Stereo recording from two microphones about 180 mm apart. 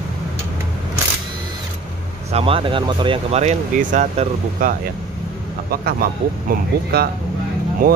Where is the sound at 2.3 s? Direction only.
30° right (ahead or behind).